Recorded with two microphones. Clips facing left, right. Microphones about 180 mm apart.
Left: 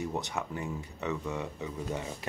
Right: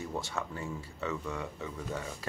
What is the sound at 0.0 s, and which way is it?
Speech, 20° left (ahead or behind).